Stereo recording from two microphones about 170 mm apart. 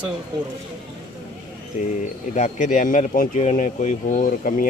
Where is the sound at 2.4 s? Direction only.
45° left (ahead or behind).